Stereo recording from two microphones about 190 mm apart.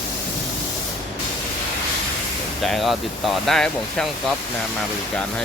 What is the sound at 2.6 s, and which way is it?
Speech, centre (ahead or behind).